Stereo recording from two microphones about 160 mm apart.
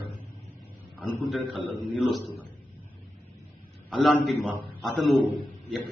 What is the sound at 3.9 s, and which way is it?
A man's voice, centre (ahead or behind).